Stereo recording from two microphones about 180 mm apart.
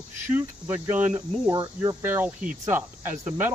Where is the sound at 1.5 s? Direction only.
20° right (ahead or behind).